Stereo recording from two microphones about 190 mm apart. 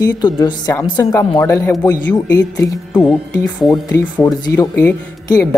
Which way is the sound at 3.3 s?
15° left (ahead or behind).